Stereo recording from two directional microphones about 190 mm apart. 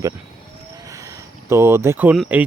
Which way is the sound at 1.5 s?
15° right (ahead or behind).